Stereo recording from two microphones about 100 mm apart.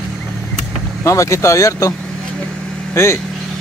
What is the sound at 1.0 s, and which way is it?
Speech, 30° left (ahead or behind).